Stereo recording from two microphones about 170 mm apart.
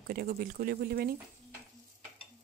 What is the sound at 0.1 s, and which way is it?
Speech, 60° right (ahead or behind).